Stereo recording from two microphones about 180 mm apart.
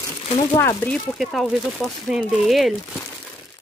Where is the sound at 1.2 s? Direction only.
Centre (ahead or behind).